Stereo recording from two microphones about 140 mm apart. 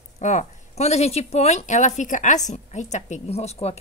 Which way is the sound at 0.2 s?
60° left (ahead or behind).